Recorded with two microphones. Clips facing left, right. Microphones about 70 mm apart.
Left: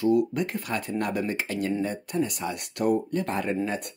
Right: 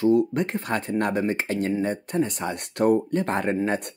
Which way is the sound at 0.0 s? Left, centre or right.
Right.